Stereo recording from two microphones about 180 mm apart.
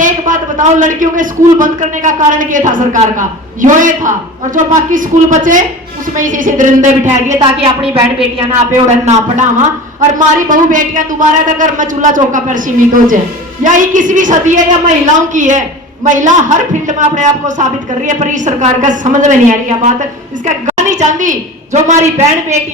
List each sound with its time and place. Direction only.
0.0 s a man's voice: 45° right (ahead or behind)
7.3 s a woman's voice: 25° right (ahead or behind)